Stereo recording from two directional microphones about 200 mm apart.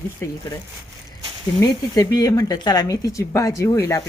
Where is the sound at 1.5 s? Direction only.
15° left (ahead or behind).